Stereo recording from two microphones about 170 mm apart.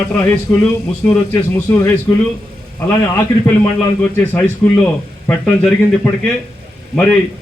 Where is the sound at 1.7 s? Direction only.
15° left (ahead or behind).